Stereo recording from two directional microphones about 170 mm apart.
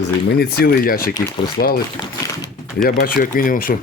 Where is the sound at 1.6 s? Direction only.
90° left.